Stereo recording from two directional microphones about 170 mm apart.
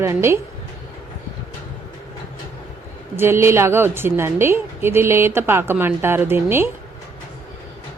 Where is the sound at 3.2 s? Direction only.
15° right (ahead or behind).